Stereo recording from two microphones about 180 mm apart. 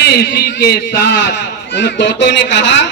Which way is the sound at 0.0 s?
65° left (ahead or behind).